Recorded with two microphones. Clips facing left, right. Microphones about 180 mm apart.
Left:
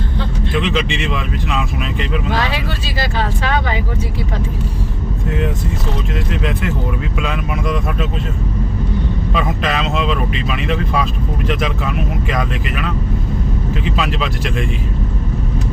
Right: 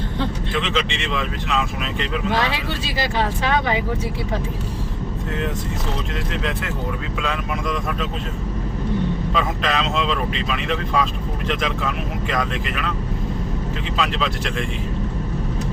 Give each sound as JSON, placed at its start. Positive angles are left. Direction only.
{"t": 0.5, "sound": "speech", "side_deg": 10}
{"t": 3.0, "sound": "speech", "side_deg": -20}
{"t": 7.2, "sound": "speech", "side_deg": 10}
{"t": 9.3, "sound": "speech", "side_deg": 10}
{"t": 13.9, "sound": "speech", "side_deg": 10}